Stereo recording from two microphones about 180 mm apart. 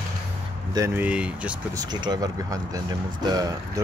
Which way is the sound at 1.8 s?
25° right (ahead or behind).